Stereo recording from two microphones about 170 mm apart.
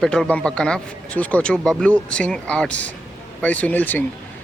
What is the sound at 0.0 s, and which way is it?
Speech, 5° left (ahead or behind).